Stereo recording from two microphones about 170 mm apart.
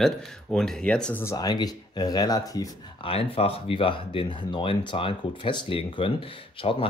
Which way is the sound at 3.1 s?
35° left (ahead or behind).